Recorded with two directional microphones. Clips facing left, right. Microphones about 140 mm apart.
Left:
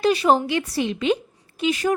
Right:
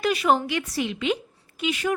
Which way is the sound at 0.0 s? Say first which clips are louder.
Left 4 dB; 30° left (ahead or behind).